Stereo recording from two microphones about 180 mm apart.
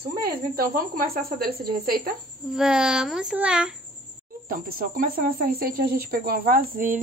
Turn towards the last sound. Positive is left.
turn(degrees=-50)  # may be behind; listen again after turning